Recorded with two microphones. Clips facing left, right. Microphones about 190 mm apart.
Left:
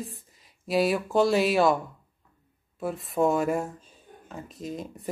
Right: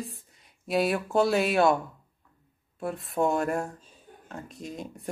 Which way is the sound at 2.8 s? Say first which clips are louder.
Left 2 dB; centre (ahead or behind).